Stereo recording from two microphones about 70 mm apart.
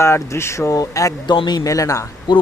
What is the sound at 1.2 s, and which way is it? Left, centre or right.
Speech, left.